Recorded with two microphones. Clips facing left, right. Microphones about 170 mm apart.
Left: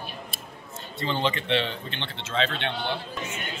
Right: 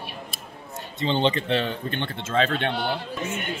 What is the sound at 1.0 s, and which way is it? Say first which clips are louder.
Speech: right 4 dB; 25° right (ahead or behind).